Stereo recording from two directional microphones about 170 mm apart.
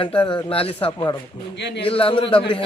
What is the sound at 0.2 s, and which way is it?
Speech, 30° left (ahead or behind).